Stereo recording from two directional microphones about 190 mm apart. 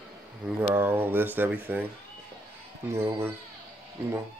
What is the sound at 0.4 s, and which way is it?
Speech, 5° right (ahead or behind).